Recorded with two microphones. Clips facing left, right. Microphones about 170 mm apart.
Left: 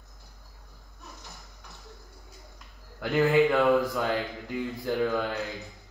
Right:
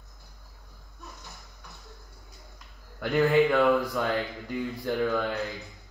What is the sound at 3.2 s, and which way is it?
A man's voice, 10° left (ahead or behind).